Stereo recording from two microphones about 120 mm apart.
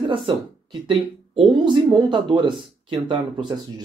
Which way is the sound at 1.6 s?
40° right (ahead or behind).